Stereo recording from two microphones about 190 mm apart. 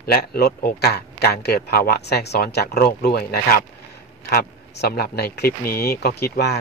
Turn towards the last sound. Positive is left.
turn(degrees=55)  # may be behind; listen again after turning